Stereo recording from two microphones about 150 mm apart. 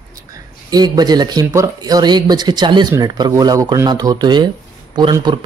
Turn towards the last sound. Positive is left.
turn(degrees=-30)  # may be behind; listen again after turning